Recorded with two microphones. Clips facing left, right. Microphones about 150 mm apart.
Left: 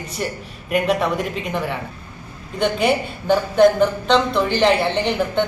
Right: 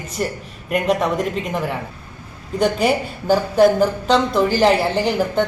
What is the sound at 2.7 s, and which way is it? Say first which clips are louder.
A man's voice: even; 5° right (ahead or behind).